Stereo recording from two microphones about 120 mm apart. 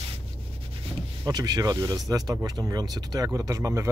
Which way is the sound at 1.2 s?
35° right (ahead or behind).